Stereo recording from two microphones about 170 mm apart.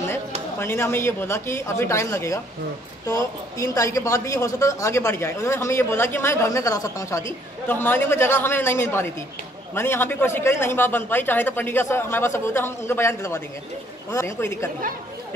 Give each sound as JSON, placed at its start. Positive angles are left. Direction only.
{"t": 0.6, "sound": "a woman's voice", "side_deg": 15}